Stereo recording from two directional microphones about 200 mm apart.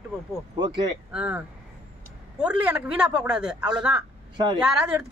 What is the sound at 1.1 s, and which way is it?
Speech, 5° right (ahead or behind).